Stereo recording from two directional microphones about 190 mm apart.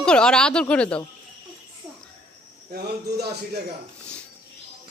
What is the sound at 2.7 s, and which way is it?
Speech, 55° right (ahead or behind).